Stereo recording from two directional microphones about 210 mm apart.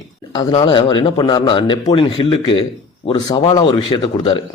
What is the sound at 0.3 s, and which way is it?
A man's voice, 25° left (ahead or behind).